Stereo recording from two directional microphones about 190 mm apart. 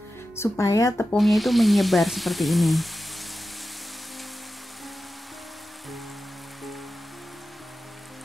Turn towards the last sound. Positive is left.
turn(degrees=0)  # may be behind; listen again after turning